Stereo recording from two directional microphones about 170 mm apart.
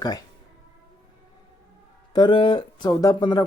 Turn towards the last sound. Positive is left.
turn(degrees=25)  # may be behind; listen again after turning